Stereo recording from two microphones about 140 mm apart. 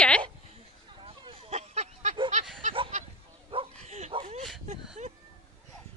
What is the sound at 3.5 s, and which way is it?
Bow-wow, 40° right (ahead or behind).